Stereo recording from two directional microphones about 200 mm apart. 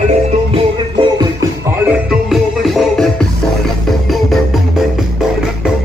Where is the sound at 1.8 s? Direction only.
5° right (ahead or behind).